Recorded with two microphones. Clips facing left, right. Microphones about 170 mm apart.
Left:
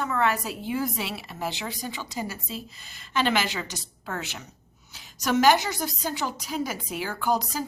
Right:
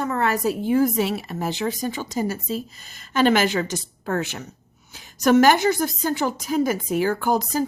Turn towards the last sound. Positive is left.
turn(degrees=-50)  # may be behind; listen again after turning